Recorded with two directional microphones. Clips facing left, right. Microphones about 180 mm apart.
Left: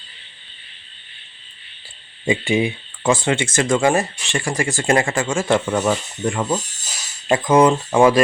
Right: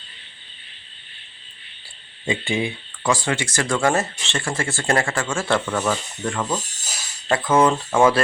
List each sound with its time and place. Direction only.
2.2 s speech: 20° left (ahead or behind)